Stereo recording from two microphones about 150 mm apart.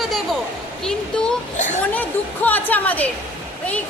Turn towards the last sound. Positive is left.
turn(degrees=10)  # may be behind; listen again after turning